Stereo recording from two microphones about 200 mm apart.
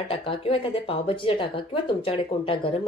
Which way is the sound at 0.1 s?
30° left (ahead or behind).